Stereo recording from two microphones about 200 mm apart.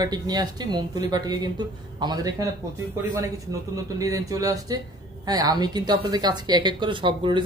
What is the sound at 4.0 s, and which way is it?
Speech, 15° right (ahead or behind).